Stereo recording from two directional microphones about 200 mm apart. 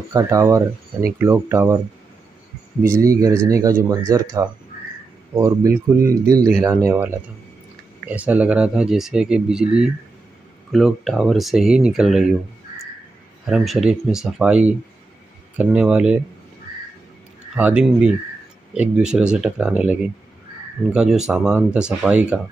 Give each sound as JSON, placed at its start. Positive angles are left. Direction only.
{"t": 0.1, "sound": "speech", "side_deg": -15}
{"t": 3.2, "sound": "speech", "side_deg": -15}
{"t": 13.5, "sound": "speech", "side_deg": 0}
{"t": 17.6, "sound": "speech", "side_deg": -5}